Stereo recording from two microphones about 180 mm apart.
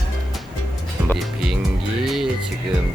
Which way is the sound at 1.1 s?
Centre (ahead or behind).